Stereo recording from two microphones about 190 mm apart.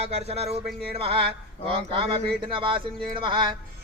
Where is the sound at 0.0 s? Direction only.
35° right (ahead or behind).